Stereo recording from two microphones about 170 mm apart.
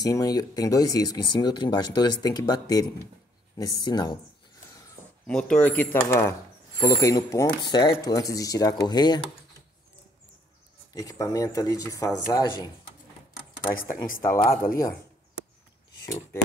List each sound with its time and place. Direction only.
0.0 s speech: 20° left (ahead or behind)
5.2 s speech: 5° left (ahead or behind); by 9.3 s 25° left (ahead or behind)
10.9 s speech: 20° left (ahead or behind)
13.7 s speech: 55° left (ahead or behind)